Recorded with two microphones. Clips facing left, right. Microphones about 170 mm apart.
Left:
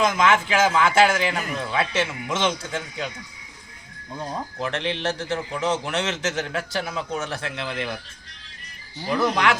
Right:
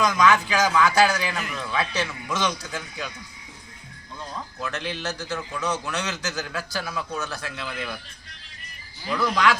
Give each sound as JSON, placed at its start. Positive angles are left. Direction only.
{"t": 0.0, "sound": "a man's voice", "side_deg": 25}
{"t": 4.1, "sound": "speech", "side_deg": 45}
{"t": 4.6, "sound": "a man's voice", "side_deg": 25}
{"t": 9.0, "sound": "a man's voice", "side_deg": 25}